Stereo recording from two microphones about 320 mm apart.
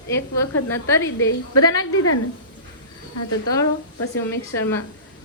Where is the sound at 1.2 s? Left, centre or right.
Left.